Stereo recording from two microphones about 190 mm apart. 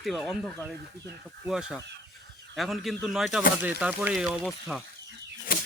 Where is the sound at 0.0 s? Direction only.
Centre (ahead or behind).